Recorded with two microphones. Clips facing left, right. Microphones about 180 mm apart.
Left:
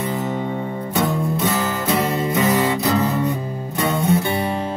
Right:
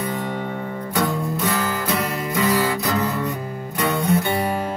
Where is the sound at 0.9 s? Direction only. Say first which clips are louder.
Left 2 dB; 25° left (ahead or behind).